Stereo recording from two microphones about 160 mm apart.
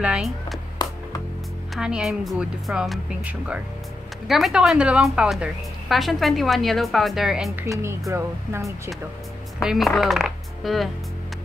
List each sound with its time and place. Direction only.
0.0 s a woman's voice: 5° right (ahead or behind)
1.8 s a woman's voice: 5° right (ahead or behind)
8.1 s speech: 15° right (ahead or behind)
9.6 s speech: centre (ahead or behind)